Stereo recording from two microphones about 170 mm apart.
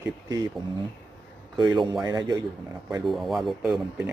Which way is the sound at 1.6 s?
25° right (ahead or behind).